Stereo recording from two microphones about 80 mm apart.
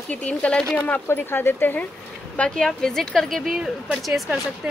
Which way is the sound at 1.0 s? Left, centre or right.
Left.